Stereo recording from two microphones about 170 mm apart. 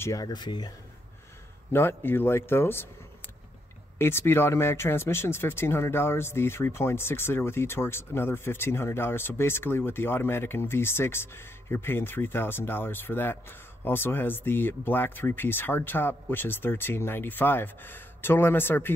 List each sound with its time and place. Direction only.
0.0 s speech: 20° left (ahead or behind)
1.7 s speech: 15° left (ahead or behind)
4.0 s speech: 15° left (ahead or behind)